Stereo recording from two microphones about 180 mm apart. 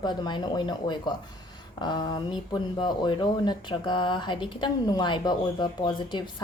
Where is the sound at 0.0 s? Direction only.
25° left (ahead or behind).